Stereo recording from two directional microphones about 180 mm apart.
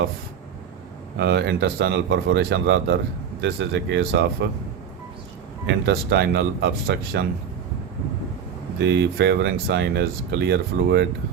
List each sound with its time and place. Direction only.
1.2 s speech: 75° right (ahead or behind)
5.6 s speech: 70° right (ahead or behind)
8.8 s speech: 75° right (ahead or behind)